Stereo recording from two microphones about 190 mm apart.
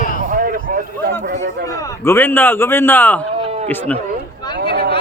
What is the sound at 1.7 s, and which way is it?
A man's voice, 15° left (ahead or behind).